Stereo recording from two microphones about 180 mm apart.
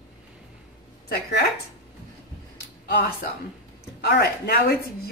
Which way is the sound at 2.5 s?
60° left (ahead or behind).